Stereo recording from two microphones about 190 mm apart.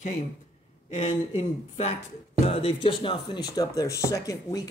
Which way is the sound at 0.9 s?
35° left (ahead or behind).